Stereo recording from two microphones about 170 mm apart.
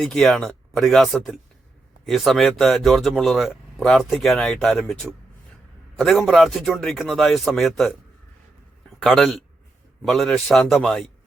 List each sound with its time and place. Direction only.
0.0 s a man's voice: 5° left (ahead or behind)